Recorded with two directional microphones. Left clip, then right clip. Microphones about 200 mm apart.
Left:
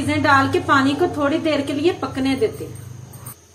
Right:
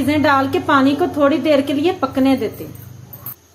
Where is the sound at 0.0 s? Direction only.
45° right (ahead or behind).